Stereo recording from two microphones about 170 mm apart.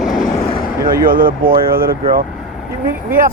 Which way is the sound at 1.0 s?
55° right (ahead or behind).